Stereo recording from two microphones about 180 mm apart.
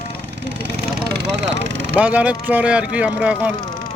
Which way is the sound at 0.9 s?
60° right (ahead or behind).